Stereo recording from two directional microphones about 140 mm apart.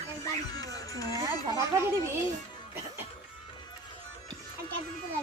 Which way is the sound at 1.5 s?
20° right (ahead or behind).